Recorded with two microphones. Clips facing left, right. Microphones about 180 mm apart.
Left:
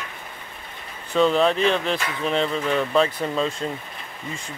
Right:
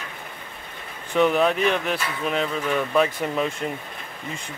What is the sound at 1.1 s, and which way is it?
Speech, 15° right (ahead or behind).